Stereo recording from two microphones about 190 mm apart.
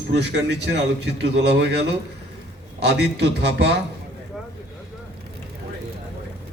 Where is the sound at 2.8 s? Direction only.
60° right (ahead or behind).